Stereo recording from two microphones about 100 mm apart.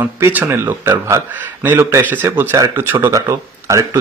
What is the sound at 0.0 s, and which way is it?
Speech, 20° right (ahead or behind).